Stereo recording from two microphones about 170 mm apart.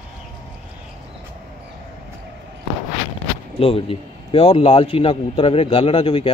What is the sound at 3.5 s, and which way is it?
A man's voice, 35° left (ahead or behind).